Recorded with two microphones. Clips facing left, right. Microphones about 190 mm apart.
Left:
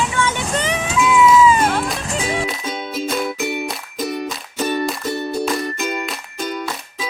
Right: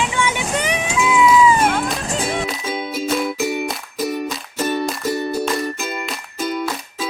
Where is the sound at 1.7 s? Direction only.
Centre (ahead or behind).